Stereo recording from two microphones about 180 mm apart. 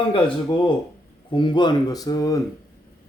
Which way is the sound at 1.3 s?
25° left (ahead or behind).